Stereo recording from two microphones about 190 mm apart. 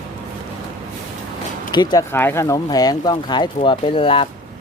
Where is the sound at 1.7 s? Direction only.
20° left (ahead or behind).